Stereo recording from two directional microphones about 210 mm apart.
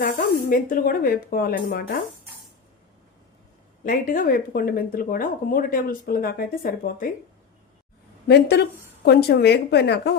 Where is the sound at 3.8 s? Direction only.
40° left (ahead or behind).